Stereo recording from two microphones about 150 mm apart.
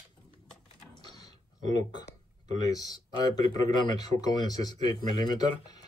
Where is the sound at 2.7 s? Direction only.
25° left (ahead or behind).